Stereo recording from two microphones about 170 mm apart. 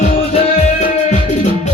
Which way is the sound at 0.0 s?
35° left (ahead or behind).